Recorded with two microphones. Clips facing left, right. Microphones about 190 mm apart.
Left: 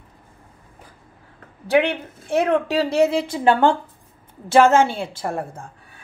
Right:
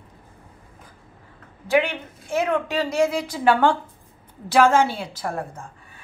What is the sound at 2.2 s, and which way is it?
Speech, 35° left (ahead or behind).